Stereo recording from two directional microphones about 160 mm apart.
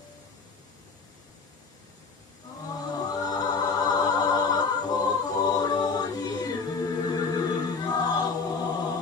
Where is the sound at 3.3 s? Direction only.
25° left (ahead or behind).